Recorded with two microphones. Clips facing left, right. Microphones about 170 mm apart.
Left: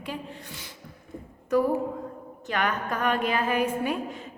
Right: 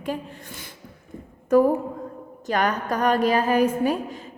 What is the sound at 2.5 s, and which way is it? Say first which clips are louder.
A woman's voice: right 5 dB; 40° right (ahead or behind).